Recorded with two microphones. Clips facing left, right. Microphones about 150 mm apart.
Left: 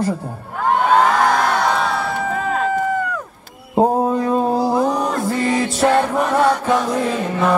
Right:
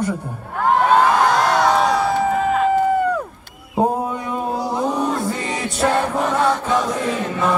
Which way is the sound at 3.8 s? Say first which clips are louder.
Left 4 dB; 30° left (ahead or behind).